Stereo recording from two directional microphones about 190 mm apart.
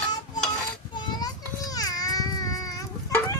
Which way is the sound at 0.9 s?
20° left (ahead or behind).